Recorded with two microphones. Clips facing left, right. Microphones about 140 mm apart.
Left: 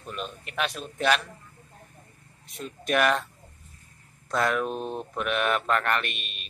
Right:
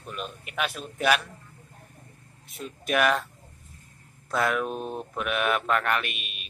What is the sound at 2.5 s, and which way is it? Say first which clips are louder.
Speech: left 1 dB; 5° right (ahead or behind).